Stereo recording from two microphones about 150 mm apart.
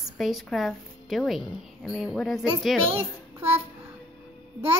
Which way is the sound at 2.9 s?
15° right (ahead or behind).